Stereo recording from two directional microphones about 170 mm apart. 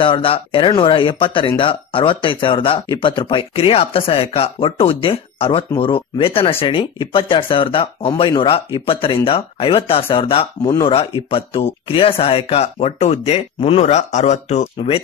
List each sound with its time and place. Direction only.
0.0 s speech: 30° left (ahead or behind)